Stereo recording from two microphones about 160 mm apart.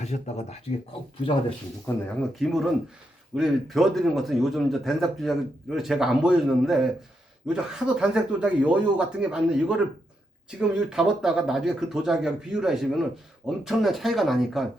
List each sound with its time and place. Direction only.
0.0 s speech: 45° left (ahead or behind)
1.9 s speech: 20° left (ahead or behind)
2.4 s a man's voice: centre (ahead or behind)